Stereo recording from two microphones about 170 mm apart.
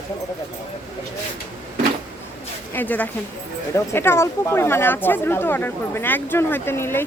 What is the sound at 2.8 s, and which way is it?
Speech, 10° left (ahead or behind).